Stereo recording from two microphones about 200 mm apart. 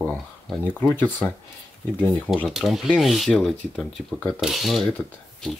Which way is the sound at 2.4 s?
Centre (ahead or behind).